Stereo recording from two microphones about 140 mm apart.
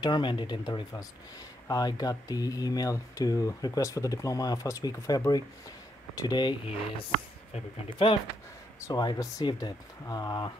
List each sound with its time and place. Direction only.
0.0 s speech: 35° left (ahead or behind)
7.5 s speech: 40° left (ahead or behind)
8.8 s speech: 25° left (ahead or behind)